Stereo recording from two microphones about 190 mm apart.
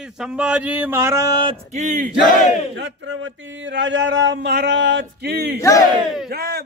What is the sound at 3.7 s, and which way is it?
Speech, 75° right (ahead or behind).